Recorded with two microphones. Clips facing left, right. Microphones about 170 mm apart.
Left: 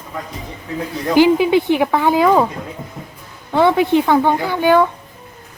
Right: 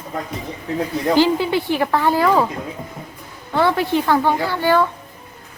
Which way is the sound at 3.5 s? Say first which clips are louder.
Left 4 dB; 20° left (ahead or behind).